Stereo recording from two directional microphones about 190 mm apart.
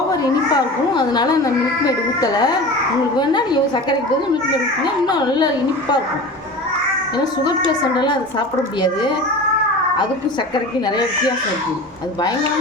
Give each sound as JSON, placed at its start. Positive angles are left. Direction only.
{"t": 0.1, "sound": "a child's voice", "side_deg": 20}
{"t": 5.0, "sound": "a child's voice", "side_deg": 20}
{"t": 7.9, "sound": "a child's voice", "side_deg": 25}
{"t": 10.5, "sound": "a child's voice", "side_deg": 20}